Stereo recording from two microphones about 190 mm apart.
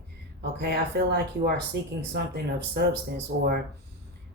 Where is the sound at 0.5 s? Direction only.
55° right (ahead or behind).